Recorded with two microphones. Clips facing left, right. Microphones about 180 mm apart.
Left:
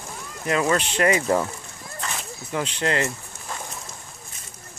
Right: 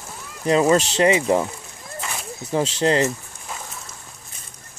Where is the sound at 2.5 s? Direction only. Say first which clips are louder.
Right 5 dB; 30° right (ahead or behind).